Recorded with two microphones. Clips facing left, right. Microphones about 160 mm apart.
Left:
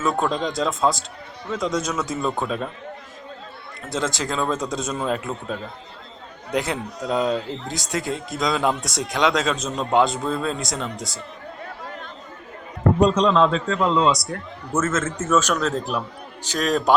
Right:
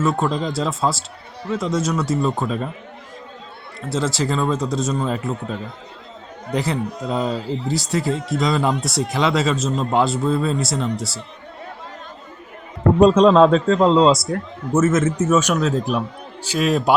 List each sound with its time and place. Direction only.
0.0 s speech: centre (ahead or behind)
3.9 s speech: 5° right (ahead or behind)
13.0 s a man's voice: 50° right (ahead or behind)
14.7 s a man's voice: 15° right (ahead or behind)